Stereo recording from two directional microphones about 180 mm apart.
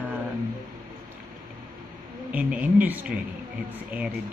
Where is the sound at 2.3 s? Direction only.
10° right (ahead or behind).